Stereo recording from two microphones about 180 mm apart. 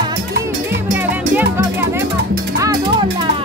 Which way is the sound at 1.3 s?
10° right (ahead or behind).